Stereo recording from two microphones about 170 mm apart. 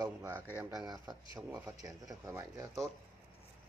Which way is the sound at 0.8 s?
25° right (ahead or behind).